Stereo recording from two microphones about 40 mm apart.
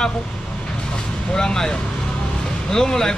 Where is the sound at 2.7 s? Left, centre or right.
Centre.